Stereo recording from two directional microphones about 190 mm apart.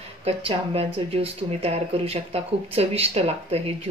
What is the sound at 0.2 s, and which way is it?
Speech, 30° right (ahead or behind).